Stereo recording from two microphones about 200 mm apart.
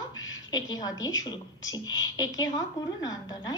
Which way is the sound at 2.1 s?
20° left (ahead or behind).